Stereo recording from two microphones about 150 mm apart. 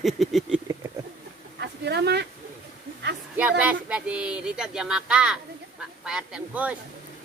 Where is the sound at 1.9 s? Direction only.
90° right.